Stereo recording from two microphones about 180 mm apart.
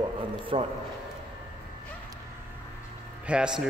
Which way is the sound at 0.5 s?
30° right (ahead or behind).